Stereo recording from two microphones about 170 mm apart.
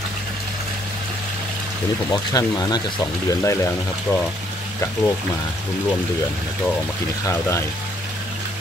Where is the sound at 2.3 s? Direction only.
20° left (ahead or behind).